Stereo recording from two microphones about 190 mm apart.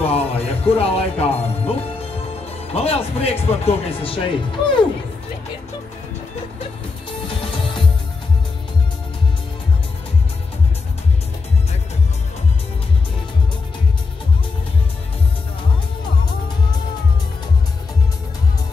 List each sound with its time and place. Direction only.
0.0 s music: 30° left (ahead or behind)
2.7 s speech: 30° left (ahead or behind)